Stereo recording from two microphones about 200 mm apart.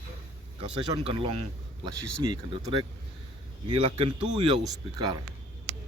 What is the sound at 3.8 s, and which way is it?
Speech, 25° right (ahead or behind).